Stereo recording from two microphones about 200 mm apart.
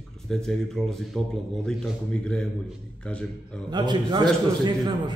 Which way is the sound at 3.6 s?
20° right (ahead or behind).